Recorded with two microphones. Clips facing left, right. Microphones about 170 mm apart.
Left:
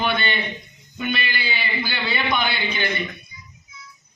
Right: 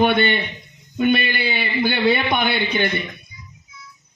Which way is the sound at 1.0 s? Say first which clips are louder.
Right 8 dB; 55° right (ahead or behind).